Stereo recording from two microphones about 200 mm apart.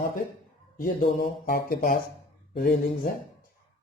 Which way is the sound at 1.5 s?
45° left (ahead or behind).